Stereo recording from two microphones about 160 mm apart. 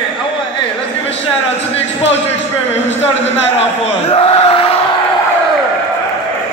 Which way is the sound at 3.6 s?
40° left (ahead or behind).